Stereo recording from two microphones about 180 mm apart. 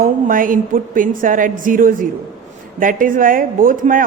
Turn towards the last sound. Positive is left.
turn(degrees=-50)  # may be behind; listen again after turning